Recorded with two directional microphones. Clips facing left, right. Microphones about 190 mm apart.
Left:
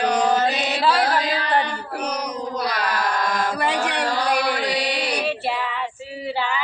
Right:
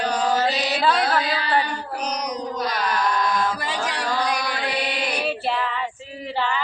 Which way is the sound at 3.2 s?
50° left (ahead or behind).